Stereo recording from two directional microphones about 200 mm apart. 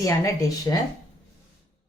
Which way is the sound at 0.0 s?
15° left (ahead or behind).